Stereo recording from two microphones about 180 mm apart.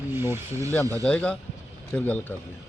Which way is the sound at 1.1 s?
5° left (ahead or behind).